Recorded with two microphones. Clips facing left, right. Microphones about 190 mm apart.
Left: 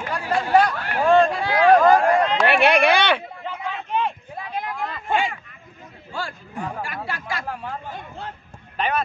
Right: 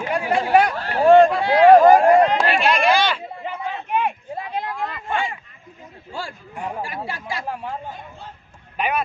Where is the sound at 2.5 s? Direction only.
65° left (ahead or behind).